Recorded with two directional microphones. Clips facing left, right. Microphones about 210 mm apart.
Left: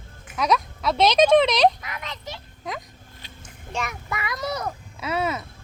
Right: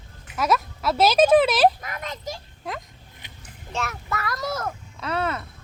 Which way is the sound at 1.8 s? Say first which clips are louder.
Right 2 dB; 45° right (ahead or behind).